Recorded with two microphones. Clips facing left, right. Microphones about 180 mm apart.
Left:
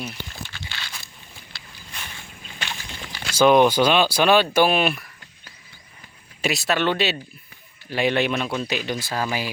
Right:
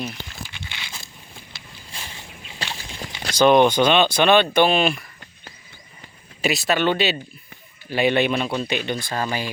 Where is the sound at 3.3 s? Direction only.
5° left (ahead or behind).